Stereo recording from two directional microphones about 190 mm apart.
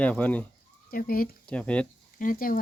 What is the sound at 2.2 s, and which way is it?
Speech, 45° left (ahead or behind).